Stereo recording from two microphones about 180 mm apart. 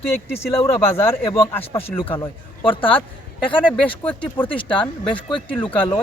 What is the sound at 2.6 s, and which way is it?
Speech, 30° left (ahead or behind).